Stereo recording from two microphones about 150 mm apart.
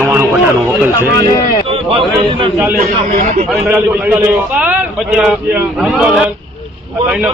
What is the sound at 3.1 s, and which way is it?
Speech, 45° right (ahead or behind).